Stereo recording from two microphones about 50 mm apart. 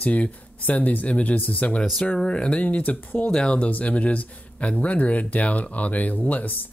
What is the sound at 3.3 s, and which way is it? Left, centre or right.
Speech, centre.